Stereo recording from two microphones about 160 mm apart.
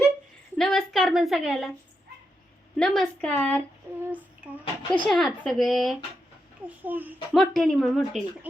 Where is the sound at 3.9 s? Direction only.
15° right (ahead or behind).